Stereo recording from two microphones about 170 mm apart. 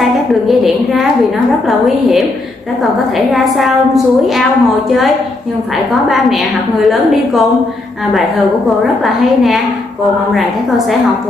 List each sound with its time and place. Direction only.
0.3 s a woman's voice: centre (ahead or behind)
9.0 s a woman's voice: centre (ahead or behind)